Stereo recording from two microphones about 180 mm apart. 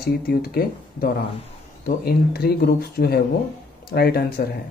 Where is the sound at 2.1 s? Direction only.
60° left (ahead or behind).